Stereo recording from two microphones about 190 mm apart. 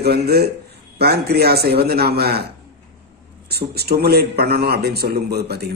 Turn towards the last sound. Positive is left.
turn(degrees=-60)  # may be behind; listen again after turning